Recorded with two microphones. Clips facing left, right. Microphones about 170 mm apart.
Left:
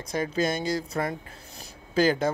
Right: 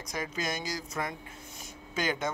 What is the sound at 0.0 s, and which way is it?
Speech, 30° left (ahead or behind).